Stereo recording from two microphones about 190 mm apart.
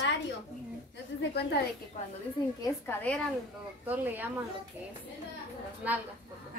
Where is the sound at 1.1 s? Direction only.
65° left (ahead or behind).